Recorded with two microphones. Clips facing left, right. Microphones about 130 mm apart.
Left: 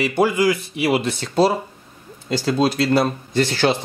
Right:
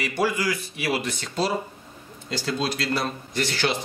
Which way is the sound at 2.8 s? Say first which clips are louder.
Left 9 dB; 30° left (ahead or behind).